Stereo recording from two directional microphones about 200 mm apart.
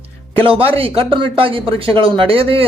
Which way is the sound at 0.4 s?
25° right (ahead or behind).